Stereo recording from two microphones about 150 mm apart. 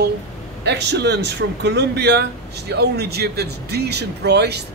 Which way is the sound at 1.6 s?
90° right.